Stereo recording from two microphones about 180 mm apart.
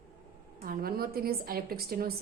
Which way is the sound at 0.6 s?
55° right (ahead or behind).